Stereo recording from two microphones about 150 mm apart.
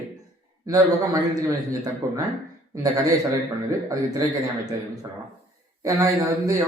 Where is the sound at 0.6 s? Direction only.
25° right (ahead or behind).